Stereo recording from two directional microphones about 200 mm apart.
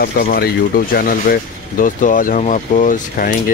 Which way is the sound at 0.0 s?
50° left (ahead or behind).